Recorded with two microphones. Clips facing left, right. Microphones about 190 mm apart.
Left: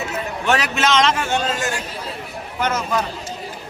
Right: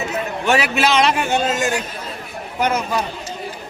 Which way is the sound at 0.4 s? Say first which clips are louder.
Right 2 dB; 10° right (ahead or behind).